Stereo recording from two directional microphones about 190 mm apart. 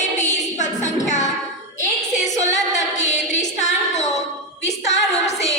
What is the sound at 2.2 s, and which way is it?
Music, 40° left (ahead or behind).